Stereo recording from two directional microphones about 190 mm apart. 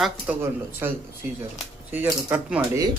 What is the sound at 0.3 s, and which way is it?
Speech, 5° right (ahead or behind).